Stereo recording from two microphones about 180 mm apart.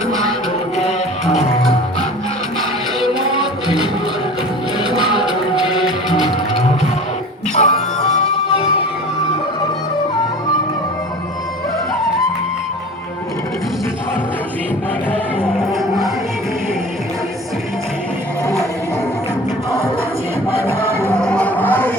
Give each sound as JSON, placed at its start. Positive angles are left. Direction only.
{"t": 0.1, "sound": "music", "side_deg": 0}
{"t": 0.8, "sound": "music", "side_deg": 35}
{"t": 2.6, "sound": "music", "side_deg": 0}
{"t": 5.0, "sound": "music", "side_deg": 0}
{"t": 7.5, "sound": "music", "side_deg": 40}
{"t": 15.1, "sound": "music", "side_deg": 5}
{"t": 20.6, "sound": "music", "side_deg": -15}
{"t": 21.2, "sound": "vehicle", "side_deg": 5}